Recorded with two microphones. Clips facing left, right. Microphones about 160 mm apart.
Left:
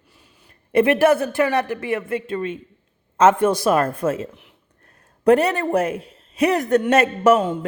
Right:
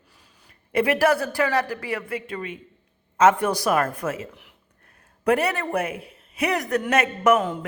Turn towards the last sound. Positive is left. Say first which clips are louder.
# left 4 dB
turn(degrees=25)  # may be behind; listen again after turning